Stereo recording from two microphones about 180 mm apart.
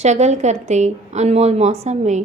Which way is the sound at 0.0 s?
40° right (ahead or behind).